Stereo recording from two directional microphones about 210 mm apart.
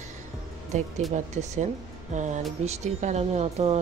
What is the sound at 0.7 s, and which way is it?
Speech, 35° right (ahead or behind).